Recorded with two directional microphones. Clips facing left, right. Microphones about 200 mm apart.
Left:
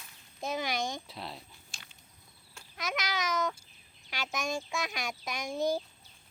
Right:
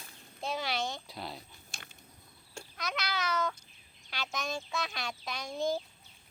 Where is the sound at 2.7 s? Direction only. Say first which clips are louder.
Left 2 dB; 15° left (ahead or behind).